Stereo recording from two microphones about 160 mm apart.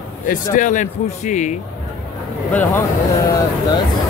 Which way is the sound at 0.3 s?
55° left (ahead or behind).